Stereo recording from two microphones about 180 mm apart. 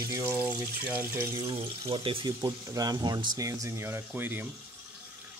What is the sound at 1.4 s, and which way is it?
Speech, 30° right (ahead or behind).